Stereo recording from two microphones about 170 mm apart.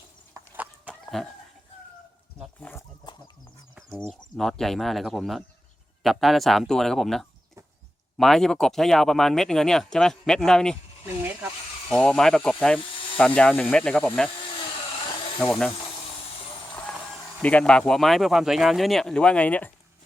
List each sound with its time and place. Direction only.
0.3 s chicken: 10° right (ahead or behind)
2.6 s a sound: 10° left (ahead or behind)
3.0 s chicken: 25° left (ahead or behind)
4.1 s speech: centre (ahead or behind)
11.9 s speech: 5° left (ahead or behind)
15.4 s speech: centre (ahead or behind)
17.4 s speech: 5° left (ahead or behind)